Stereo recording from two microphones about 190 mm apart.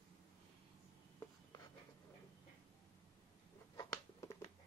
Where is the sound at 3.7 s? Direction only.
15° left (ahead or behind).